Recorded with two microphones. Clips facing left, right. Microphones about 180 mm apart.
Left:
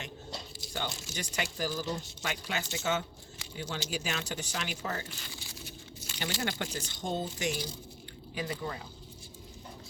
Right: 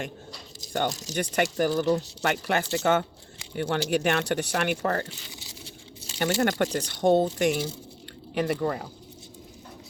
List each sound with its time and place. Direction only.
0.9 s speech: 40° right (ahead or behind)
1.1 s speech: 55° right (ahead or behind)
5.6 s a sound: 30° right (ahead or behind)
6.2 s speech: 70° right (ahead or behind)
8.4 s speech: 75° right (ahead or behind)